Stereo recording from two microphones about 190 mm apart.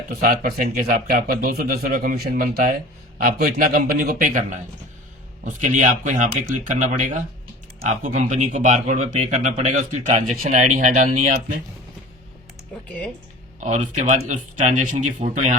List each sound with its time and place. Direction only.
0.1 s speech: 50° right (ahead or behind)
8.3 s speech: 35° right (ahead or behind)
13.6 s speech: 40° right (ahead or behind)